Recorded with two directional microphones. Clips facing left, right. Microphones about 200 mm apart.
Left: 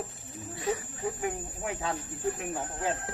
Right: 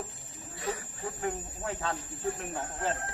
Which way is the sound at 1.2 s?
10° left (ahead or behind).